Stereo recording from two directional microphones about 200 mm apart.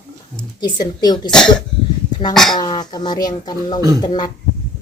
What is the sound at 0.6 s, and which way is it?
Speech, 20° left (ahead or behind).